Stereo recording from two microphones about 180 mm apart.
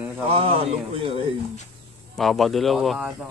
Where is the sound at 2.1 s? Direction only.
Centre (ahead or behind).